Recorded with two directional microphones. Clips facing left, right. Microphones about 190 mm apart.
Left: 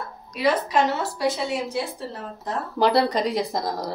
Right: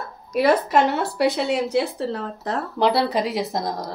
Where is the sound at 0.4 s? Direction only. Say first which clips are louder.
Right 4 dB; 60° right (ahead or behind).